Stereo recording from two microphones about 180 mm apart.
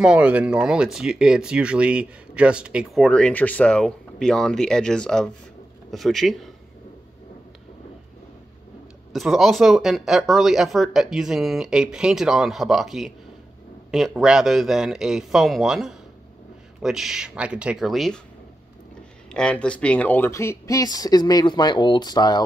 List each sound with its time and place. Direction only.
0.0 s speech: 5° right (ahead or behind)
9.1 s speech: centre (ahead or behind)
19.3 s speech: 5° left (ahead or behind); by 22.4 s 20° left (ahead or behind)